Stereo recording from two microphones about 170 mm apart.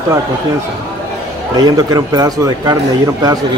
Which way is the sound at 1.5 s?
25° right (ahead or behind).